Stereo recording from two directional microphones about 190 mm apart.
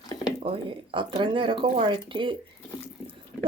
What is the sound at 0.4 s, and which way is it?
Speech, 30° right (ahead or behind).